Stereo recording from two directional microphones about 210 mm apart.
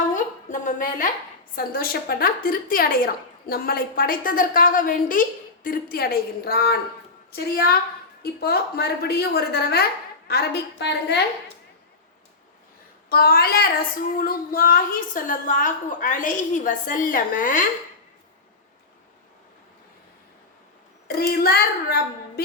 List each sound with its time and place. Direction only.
0.1 s a sound: 35° left (ahead or behind)
1.5 s a woman's voice: 45° left (ahead or behind)
13.1 s a woman's voice: 45° left (ahead or behind)
21.2 s a woman's voice: 50° left (ahead or behind)